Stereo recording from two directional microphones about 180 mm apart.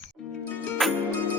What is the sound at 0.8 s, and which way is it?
Music, centre (ahead or behind).